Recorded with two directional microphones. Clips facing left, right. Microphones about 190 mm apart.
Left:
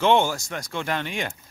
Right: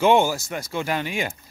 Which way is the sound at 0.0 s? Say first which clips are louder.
Right 2 dB; 10° right (ahead or behind).